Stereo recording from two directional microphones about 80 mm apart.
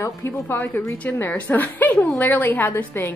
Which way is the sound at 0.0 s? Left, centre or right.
Left.